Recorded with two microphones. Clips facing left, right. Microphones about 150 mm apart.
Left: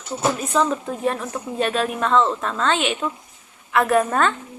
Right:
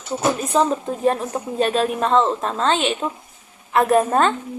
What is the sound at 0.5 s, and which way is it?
A woman's voice, 35° right (ahead or behind).